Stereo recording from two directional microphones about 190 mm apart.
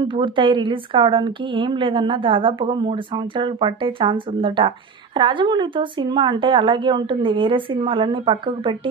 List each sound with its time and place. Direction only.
0.0 s speech: 25° right (ahead or behind)